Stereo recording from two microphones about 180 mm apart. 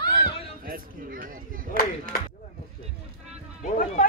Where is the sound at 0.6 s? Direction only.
50° right (ahead or behind).